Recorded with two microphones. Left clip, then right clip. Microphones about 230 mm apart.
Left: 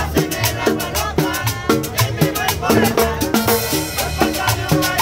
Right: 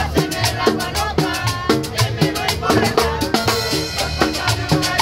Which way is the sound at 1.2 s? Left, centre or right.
Left.